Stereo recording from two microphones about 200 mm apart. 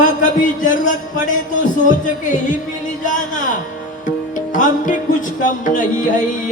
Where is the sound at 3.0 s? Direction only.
40° left (ahead or behind).